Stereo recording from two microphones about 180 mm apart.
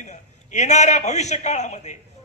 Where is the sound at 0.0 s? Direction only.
40° left (ahead or behind).